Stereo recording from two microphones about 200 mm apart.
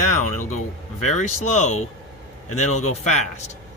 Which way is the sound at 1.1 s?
35° left (ahead or behind).